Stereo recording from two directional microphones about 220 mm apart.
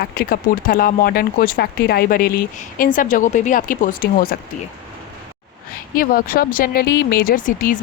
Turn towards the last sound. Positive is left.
turn(degrees=40)  # may be behind; listen again after turning